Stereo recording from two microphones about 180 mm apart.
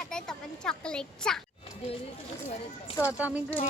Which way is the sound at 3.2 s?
5° right (ahead or behind).